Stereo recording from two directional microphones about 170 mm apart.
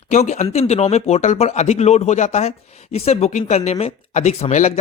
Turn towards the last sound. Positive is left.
turn(degrees=45)  # may be behind; listen again after turning